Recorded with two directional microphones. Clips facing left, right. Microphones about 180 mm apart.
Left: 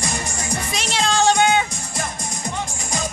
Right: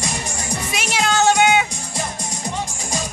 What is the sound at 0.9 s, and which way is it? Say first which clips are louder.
Music: right 1 dB; 5° right (ahead or behind).